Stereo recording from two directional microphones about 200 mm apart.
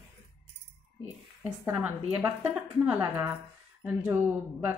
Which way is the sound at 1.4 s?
5° right (ahead or behind).